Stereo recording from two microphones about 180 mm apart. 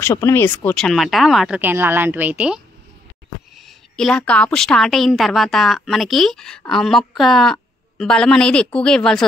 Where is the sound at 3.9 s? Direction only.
5° left (ahead or behind).